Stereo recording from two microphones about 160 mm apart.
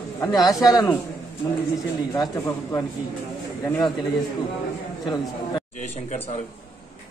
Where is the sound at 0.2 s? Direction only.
20° left (ahead or behind).